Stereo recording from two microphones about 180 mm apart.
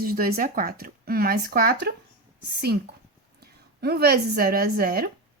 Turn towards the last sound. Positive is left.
turn(degrees=-55)  # may be behind; listen again after turning